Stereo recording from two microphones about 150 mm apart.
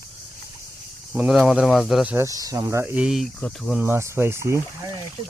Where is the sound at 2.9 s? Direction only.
5° right (ahead or behind).